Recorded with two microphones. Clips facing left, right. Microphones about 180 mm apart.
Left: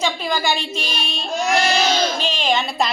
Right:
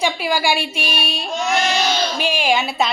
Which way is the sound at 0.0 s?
10° right (ahead or behind).